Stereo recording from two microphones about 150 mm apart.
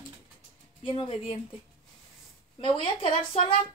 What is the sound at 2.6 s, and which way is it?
Speech, 35° left (ahead or behind).